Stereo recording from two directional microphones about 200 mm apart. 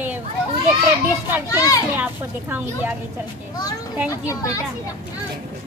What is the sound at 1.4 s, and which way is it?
Speech, 15° left (ahead or behind).